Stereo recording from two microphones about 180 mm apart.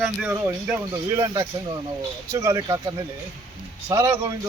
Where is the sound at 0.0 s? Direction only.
5° right (ahead or behind).